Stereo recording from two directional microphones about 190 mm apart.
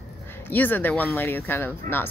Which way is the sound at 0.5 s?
10° left (ahead or behind).